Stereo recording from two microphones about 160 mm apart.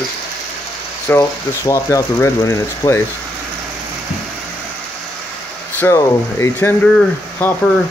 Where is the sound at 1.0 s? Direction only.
15° left (ahead or behind).